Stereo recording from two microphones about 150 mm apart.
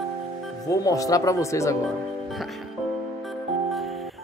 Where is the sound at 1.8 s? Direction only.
Centre (ahead or behind).